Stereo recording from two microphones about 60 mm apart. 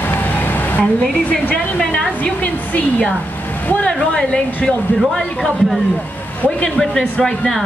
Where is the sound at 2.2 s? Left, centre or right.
Left.